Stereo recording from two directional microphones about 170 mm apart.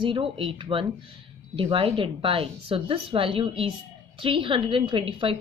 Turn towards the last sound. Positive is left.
turn(degrees=-30)  # may be behind; listen again after turning